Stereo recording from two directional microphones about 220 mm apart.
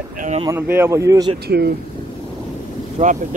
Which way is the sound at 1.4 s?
45° right (ahead or behind).